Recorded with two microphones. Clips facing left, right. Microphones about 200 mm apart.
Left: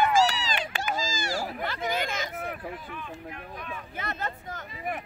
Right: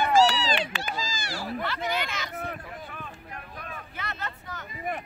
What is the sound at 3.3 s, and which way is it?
Boat, 40° right (ahead or behind).